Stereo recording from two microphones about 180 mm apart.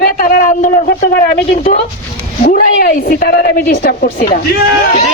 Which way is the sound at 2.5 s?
50° left (ahead or behind).